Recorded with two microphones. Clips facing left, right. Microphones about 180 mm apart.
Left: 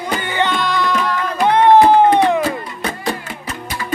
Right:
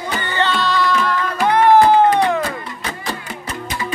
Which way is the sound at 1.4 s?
20° left (ahead or behind).